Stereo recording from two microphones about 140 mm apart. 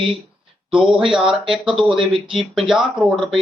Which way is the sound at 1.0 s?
5° right (ahead or behind).